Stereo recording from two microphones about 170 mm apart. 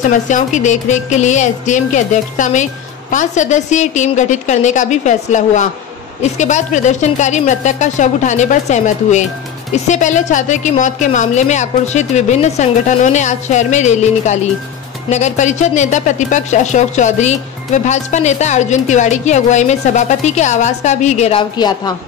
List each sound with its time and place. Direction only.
0.3 s speech: 45° left (ahead or behind); by 21.9 s 25° left (ahead or behind)